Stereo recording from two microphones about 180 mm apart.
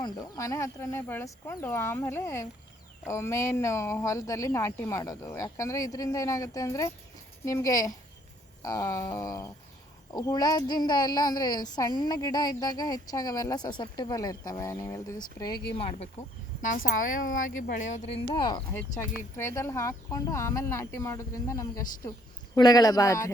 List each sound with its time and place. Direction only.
0.0 s a woman's voice: 20° left (ahead or behind)
15.8 s speech: 35° left (ahead or behind)
16.6 s a woman's voice: 50° left (ahead or behind)
18.3 s a woman's voice: 25° left (ahead or behind)